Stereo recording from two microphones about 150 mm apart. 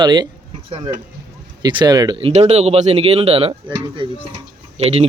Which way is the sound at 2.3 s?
45° right (ahead or behind).